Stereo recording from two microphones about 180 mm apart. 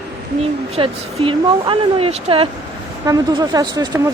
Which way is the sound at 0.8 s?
30° right (ahead or behind).